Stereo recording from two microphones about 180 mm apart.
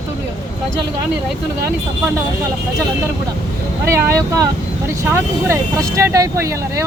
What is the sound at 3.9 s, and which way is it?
Speech, 15° right (ahead or behind).